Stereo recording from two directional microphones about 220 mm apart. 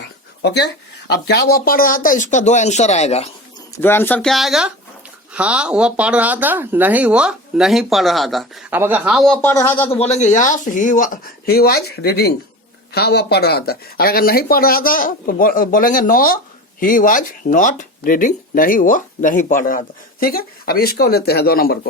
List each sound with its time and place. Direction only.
1.0 s speech: 45° left (ahead or behind); by 3.2 s 30° left (ahead or behind)
3.8 s a man's voice: 10° left (ahead or behind)
9.9 s speech: 30° left (ahead or behind)